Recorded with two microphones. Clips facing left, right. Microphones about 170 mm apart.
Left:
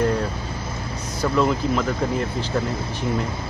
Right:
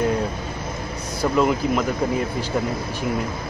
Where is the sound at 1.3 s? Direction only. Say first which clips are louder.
Right 1 dB; 10° right (ahead or behind).